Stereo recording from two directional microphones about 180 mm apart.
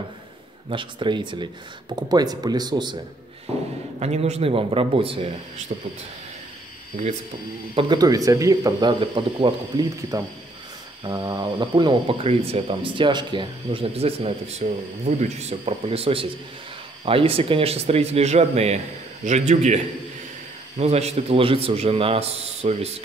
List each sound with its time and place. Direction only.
0.7 s speech: 30° right (ahead or behind)
4.0 s a man's voice: 35° right (ahead or behind)
7.7 s a man's voice: 25° right (ahead or behind)